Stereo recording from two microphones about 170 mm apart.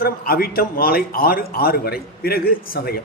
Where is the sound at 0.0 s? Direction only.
60° left (ahead or behind).